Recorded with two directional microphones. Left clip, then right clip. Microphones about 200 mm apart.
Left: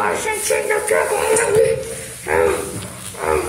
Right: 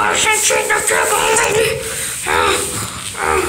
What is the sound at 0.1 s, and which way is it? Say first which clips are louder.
Speech: right 5 dB; 5° left (ahead or behind).